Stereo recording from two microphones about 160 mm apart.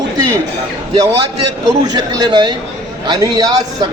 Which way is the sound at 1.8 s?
25° right (ahead or behind).